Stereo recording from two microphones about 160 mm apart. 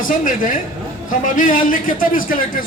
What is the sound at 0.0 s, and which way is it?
A man's voice, 55° left (ahead or behind).